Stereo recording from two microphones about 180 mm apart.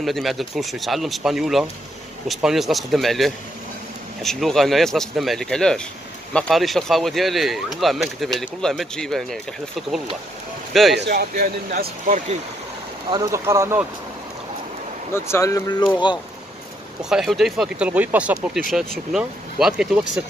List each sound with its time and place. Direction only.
0.0 s speech: centre (ahead or behind)
11.0 s speech: 65° right (ahead or behind); by 12.4 s 50° right (ahead or behind)
13.1 s speech: 20° right (ahead or behind)
15.1 s speech: 15° left (ahead or behind)
17.0 s speech: 5° right (ahead or behind)